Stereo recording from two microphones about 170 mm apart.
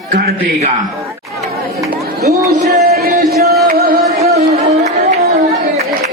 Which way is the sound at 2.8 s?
65° right (ahead or behind).